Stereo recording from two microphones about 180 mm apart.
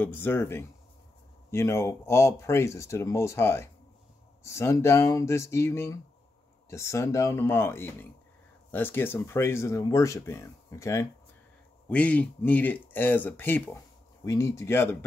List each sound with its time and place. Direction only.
0.0 s speech: 10° left (ahead or behind)